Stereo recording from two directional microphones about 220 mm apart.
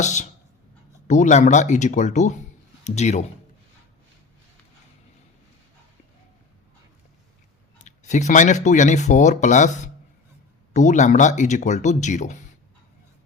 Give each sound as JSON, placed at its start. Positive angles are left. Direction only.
{"t": 0.0, "sound": "speech", "side_deg": 35}
{"t": 7.9, "sound": "speech", "side_deg": 35}